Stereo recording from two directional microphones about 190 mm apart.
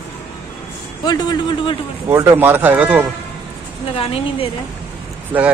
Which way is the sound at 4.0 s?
30° left (ahead or behind).